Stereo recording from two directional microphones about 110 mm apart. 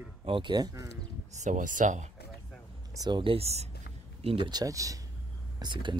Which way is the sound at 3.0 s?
45° right (ahead or behind).